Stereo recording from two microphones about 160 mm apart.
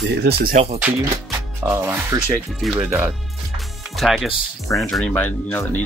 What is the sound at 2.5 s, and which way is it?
Speech, centre (ahead or behind).